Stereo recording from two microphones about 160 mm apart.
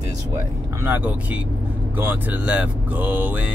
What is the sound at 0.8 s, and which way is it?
Speech, 10° right (ahead or behind).